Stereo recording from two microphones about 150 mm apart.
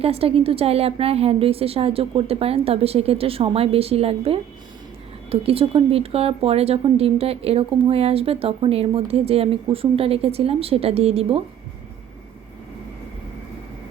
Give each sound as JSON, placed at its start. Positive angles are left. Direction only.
{"t": 0.0, "sound": "speech", "side_deg": -40}